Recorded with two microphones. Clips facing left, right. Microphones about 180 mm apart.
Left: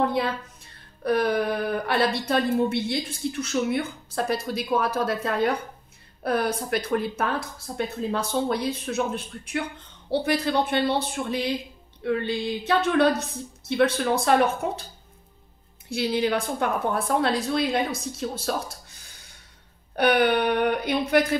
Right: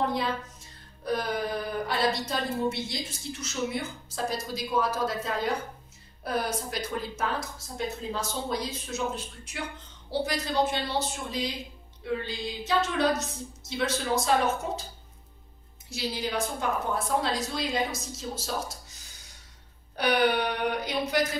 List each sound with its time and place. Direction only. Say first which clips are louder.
0.1 s speech: left 4 dB; 60° left (ahead or behind)
15.9 s speech: left 8 dB; 60° left (ahead or behind)
20.0 s speech: left 4 dB; 60° left (ahead or behind)